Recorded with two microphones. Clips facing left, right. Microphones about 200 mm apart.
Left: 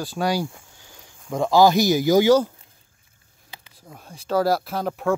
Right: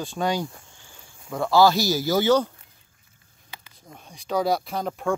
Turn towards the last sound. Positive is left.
turn(degrees=0)  # may be behind; listen again after turning